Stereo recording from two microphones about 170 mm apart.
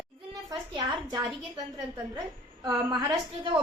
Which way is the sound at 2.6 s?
25° right (ahead or behind).